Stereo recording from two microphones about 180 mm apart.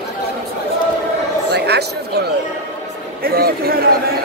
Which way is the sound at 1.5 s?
65° right (ahead or behind).